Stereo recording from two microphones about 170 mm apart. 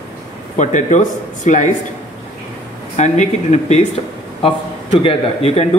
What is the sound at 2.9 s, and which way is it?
Speech, 45° left (ahead or behind).